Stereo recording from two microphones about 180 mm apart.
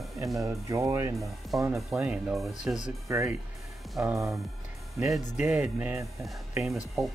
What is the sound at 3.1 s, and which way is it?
Speech, 15° right (ahead or behind).